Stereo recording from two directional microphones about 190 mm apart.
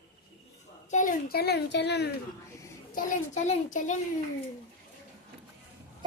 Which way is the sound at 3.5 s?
40° left (ahead or behind).